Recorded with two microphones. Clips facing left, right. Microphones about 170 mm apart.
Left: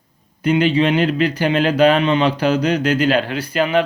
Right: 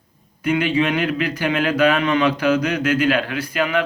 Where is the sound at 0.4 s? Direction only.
30° left (ahead or behind).